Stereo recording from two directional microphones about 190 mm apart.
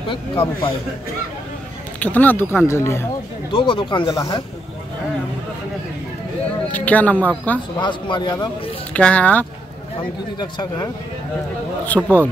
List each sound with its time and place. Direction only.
0.1 s speech: 25° left (ahead or behind)
2.0 s speech: 10° left (ahead or behind)
3.5 s speech: 25° left (ahead or behind)
6.7 s speech: 10° left (ahead or behind)
7.8 s speech: 25° left (ahead or behind)
8.9 s speech: 5° left (ahead or behind)
10.4 s speech: 20° left (ahead or behind)
11.8 s speech: 10° left (ahead or behind)